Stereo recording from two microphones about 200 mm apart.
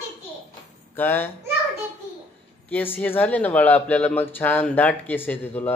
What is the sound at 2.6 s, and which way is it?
Speech, 10° left (ahead or behind).